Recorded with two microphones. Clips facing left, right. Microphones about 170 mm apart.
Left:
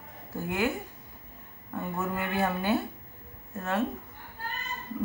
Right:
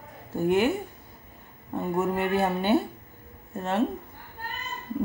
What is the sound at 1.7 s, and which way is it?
Speech, 25° right (ahead or behind).